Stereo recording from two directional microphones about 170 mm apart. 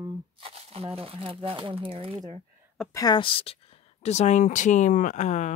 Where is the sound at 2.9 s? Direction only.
25° left (ahead or behind).